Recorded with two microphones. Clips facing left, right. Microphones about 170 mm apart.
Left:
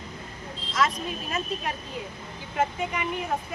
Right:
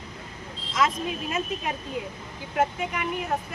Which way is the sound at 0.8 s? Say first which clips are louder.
Right 3 dB; 5° right (ahead or behind).